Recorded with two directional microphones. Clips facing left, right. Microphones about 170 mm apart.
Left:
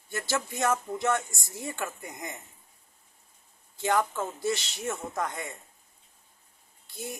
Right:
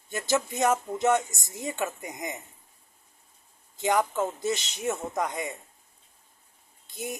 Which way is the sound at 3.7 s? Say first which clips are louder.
Right 2 dB; 15° right (ahead or behind).